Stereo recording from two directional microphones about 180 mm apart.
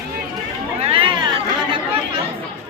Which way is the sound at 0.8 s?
30° right (ahead or behind).